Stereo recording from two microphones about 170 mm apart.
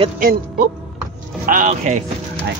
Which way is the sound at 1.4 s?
50° right (ahead or behind).